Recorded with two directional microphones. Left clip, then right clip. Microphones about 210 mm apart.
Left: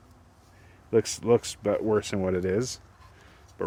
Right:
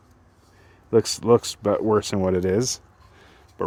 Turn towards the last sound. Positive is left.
turn(degrees=-30)  # may be behind; listen again after turning